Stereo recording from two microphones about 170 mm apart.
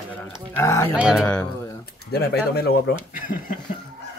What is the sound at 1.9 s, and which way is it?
Speech, 70° left (ahead or behind).